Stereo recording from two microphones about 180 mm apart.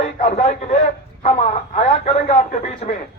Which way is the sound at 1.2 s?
40° left (ahead or behind).